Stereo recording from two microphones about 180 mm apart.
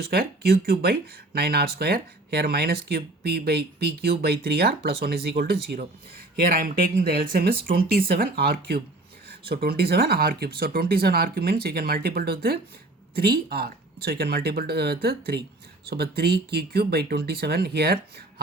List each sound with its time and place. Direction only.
0.0 s speech: 60° right (ahead or behind)
6.4 s speech: 55° right (ahead or behind)